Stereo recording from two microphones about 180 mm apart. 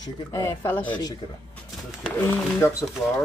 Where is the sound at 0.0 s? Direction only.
25° left (ahead or behind).